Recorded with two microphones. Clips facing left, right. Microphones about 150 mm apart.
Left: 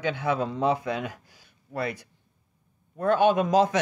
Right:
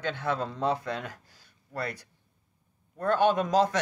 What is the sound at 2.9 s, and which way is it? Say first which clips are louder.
Speech: left 3 dB; 15° left (ahead or behind).